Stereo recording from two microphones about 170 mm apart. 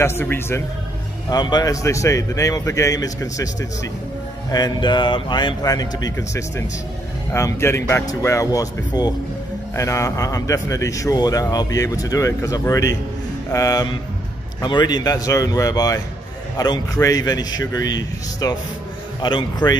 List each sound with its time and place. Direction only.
0.0 s a man's voice: 15° left (ahead or behind)
1.3 s a man's voice: 25° left (ahead or behind)
4.5 s a man's voice: 25° left (ahead or behind)